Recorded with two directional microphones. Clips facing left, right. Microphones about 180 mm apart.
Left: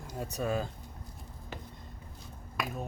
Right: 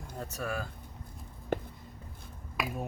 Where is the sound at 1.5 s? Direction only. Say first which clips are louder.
Right 13 dB; 55° right (ahead or behind).